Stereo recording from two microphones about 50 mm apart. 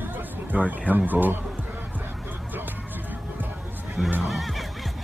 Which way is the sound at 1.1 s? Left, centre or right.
Right.